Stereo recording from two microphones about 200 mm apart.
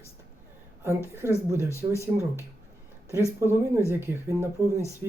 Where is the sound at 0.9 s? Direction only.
15° right (ahead or behind).